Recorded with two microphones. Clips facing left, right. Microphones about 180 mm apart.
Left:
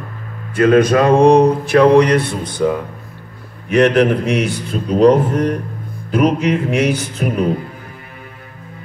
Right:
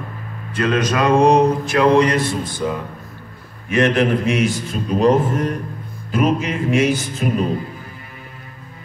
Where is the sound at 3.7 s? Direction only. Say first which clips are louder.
Left 4 dB; 60° left (ahead or behind).